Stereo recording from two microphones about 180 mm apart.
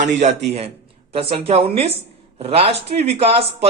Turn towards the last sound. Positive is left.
turn(degrees=-35)  # may be behind; listen again after turning